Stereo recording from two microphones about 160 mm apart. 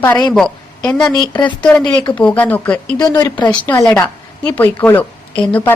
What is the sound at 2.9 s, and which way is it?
Speech, 25° left (ahead or behind).